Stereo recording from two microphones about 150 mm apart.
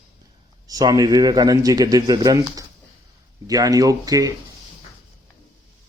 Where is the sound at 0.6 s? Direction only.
25° right (ahead or behind).